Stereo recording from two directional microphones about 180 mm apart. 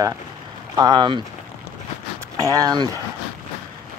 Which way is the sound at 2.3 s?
20° right (ahead or behind).